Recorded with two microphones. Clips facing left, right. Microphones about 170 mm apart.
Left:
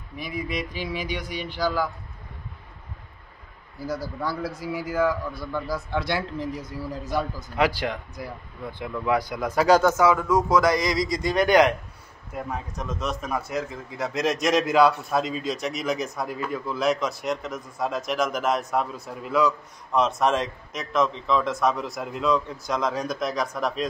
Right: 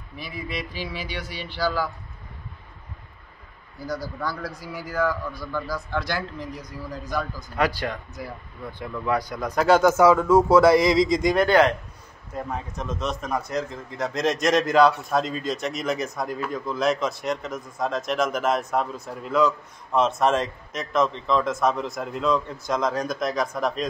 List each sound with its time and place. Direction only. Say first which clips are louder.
0.2 s speech: left 3 dB; 15° left (ahead or behind)
3.8 s a man's voice: even; centre (ahead or behind)
6.0 s a man's voice: left 2 dB; 25° left (ahead or behind)
7.5 s speech: left 1 dB; 10° left (ahead or behind)
10.1 s speech: right 5 dB; 25° right (ahead or behind)
11.4 s speech: left 2 dB; 15° left (ahead or behind)
12.4 s a man's voice: right 1 dB; centre (ahead or behind)